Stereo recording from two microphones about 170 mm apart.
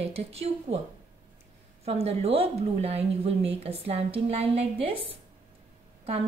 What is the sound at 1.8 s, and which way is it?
A woman's voice, 35° right (ahead or behind).